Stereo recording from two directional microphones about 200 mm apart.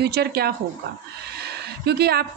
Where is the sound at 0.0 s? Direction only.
50° right (ahead or behind).